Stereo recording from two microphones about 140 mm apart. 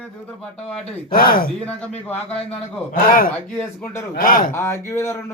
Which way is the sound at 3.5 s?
15° left (ahead or behind).